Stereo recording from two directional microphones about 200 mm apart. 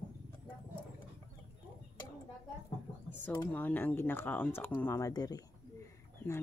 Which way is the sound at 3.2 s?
15° left (ahead or behind).